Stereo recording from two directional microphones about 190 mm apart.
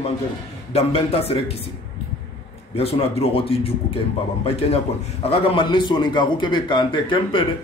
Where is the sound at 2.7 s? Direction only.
30° left (ahead or behind).